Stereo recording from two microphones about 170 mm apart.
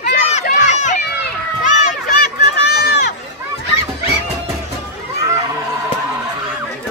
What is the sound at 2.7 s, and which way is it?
Run, 70° left (ahead or behind).